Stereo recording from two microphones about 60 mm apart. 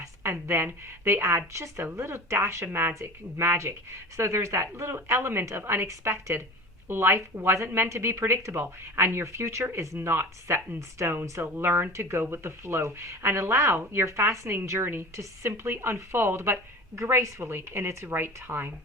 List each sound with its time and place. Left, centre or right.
0.0 s a sound: right
1.0 s speech: right
10.8 s speech: right
11.1 s speech: right